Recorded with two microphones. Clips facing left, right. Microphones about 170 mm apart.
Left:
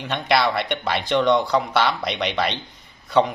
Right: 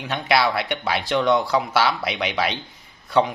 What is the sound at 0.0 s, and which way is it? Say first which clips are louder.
Speech: even; centre (ahead or behind).